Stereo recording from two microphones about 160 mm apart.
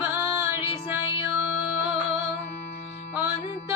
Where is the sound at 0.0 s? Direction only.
15° right (ahead or behind).